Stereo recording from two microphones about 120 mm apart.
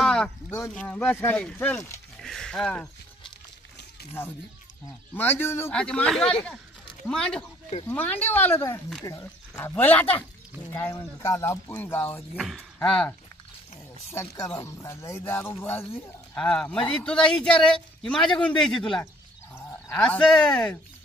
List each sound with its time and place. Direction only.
0.0 s a sound: 5° left (ahead or behind)
0.7 s speech: 10° left (ahead or behind)
2.1 s speech: 5° left (ahead or behind)
5.1 s speech: 20° left (ahead or behind)
5.7 s speech: 10° left (ahead or behind)
12.4 s speech: centre (ahead or behind)
14.1 s speech: 25° left (ahead or behind)
16.3 s speech: 5° left (ahead or behind)